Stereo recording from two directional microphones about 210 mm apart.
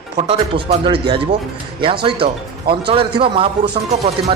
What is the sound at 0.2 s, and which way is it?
Speech, 30° right (ahead or behind).